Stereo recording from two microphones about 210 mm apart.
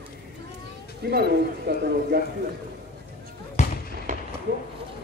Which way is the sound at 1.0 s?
50° right (ahead or behind).